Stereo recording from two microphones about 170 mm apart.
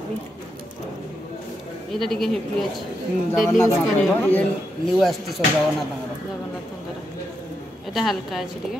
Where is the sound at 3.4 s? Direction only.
15° left (ahead or behind); by 5.3 s centre (ahead or behind).